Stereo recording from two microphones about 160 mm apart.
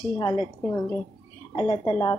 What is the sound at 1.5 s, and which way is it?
Speech, 30° left (ahead or behind).